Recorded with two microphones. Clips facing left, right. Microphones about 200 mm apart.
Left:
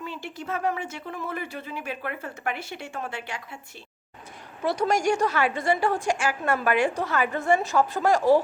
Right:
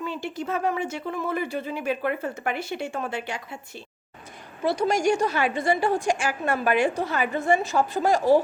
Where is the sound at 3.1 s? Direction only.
40° right (ahead or behind).